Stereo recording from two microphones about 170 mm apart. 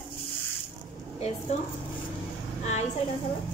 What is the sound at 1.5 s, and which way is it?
Speech, 40° left (ahead or behind).